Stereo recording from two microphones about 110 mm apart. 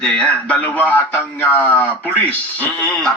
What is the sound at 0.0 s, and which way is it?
A man's voice, 10° left (ahead or behind).